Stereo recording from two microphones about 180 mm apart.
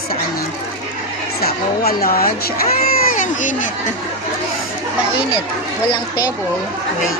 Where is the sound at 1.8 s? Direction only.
55° left (ahead or behind).